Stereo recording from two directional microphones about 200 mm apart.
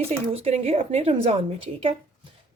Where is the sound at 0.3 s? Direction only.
30° right (ahead or behind).